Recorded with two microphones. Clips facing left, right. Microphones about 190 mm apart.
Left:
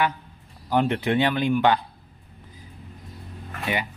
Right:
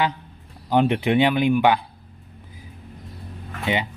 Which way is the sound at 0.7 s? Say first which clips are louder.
Right 3 dB; 15° right (ahead or behind).